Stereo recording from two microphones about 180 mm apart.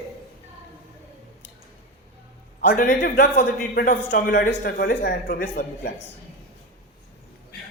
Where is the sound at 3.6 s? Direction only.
50° left (ahead or behind).